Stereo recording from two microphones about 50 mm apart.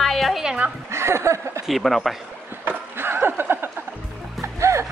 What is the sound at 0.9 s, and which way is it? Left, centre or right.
Speech, right.